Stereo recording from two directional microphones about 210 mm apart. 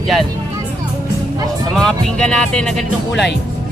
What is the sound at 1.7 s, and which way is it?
Speech, centre (ahead or behind).